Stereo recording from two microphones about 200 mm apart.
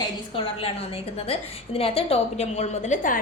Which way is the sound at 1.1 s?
30° left (ahead or behind).